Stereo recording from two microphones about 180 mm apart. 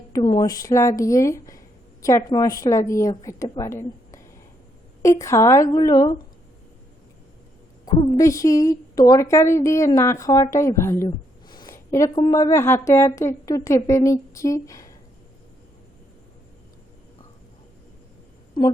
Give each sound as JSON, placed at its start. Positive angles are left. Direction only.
{"t": 0.1, "sound": "a woman's voice", "side_deg": 25}
{"t": 7.9, "sound": "a woman's voice", "side_deg": 15}